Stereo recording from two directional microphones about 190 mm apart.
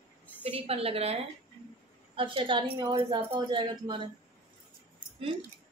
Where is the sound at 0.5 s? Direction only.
30° right (ahead or behind).